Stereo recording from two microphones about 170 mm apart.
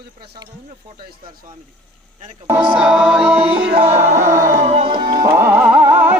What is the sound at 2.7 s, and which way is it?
Music, 5° right (ahead or behind).